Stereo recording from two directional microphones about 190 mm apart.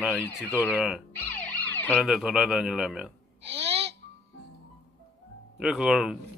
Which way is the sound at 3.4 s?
30° right (ahead or behind).